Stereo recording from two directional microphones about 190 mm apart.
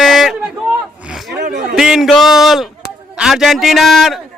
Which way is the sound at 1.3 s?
60° right (ahead or behind).